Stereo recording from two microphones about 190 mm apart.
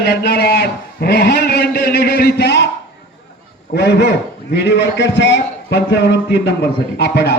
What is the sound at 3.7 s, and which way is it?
A man's voice, 60° left (ahead or behind).